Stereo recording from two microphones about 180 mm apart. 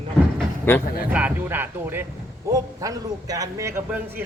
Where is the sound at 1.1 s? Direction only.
10° right (ahead or behind).